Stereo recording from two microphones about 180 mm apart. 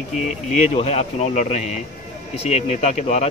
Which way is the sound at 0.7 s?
40° left (ahead or behind).